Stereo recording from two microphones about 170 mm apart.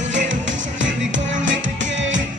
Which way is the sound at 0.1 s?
90° right.